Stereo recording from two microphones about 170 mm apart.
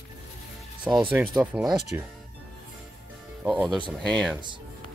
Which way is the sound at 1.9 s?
15° right (ahead or behind).